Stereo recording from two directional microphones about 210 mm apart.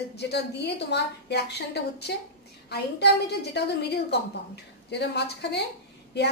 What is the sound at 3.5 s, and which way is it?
A woman's voice, 50° left (ahead or behind).